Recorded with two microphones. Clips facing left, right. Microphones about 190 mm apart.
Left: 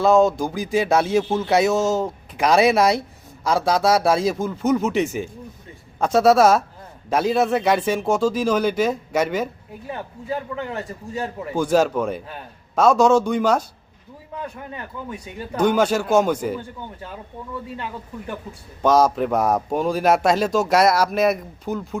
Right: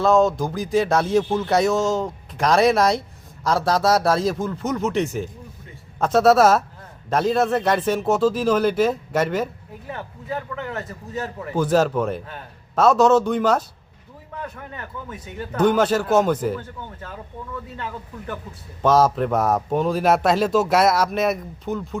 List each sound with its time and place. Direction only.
0.0 s speech: centre (ahead or behind)
10.5 s a man's voice: 15° left (ahead or behind)
11.5 s speech: 5° right (ahead or behind)
15.6 s speech: centre (ahead or behind)
18.8 s speech: centre (ahead or behind)